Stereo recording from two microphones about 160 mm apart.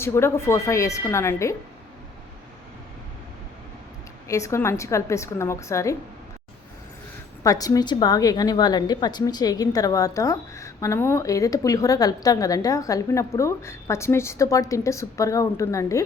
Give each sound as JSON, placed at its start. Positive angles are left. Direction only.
{"t": 0.0, "sound": "speech", "side_deg": 15}
{"t": 4.3, "sound": "a woman's voice", "side_deg": 20}
{"t": 7.4, "sound": "a woman's voice", "side_deg": 20}